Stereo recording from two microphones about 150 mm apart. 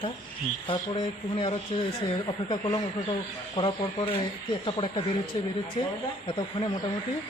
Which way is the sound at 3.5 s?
35° left (ahead or behind).